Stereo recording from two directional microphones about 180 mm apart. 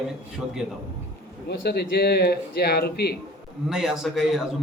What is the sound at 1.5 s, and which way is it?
Speech, 65° left (ahead or behind).